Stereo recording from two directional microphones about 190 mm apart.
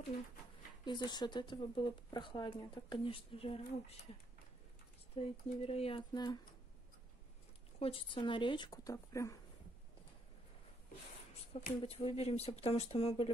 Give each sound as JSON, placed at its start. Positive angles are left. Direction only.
{"t": 0.8, "sound": "speech", "side_deg": 25}
{"t": 5.1, "sound": "speech", "side_deg": 30}
{"t": 7.8, "sound": "speech", "side_deg": 25}
{"t": 11.8, "sound": "speech", "side_deg": 30}